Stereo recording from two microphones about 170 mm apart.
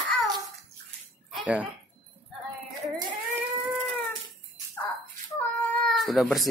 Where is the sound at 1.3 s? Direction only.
5° right (ahead or behind).